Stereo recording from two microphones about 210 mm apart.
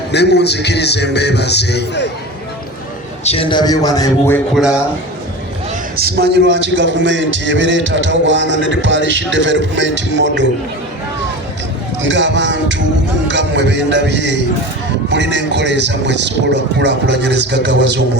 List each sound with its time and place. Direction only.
0.1 s speech: 55° left (ahead or behind)
3.2 s speech: 25° left (ahead or behind)
4.5 s a man's voice: 5° right (ahead or behind)
6.0 s a man's voice: 50° right (ahead or behind)
12.0 s a man's voice: 60° right (ahead or behind)